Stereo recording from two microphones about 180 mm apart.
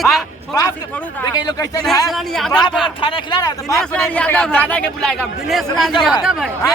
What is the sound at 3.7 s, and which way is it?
A man's voice, 5° left (ahead or behind).